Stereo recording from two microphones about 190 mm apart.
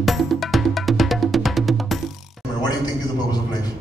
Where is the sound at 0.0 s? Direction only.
Centre (ahead or behind).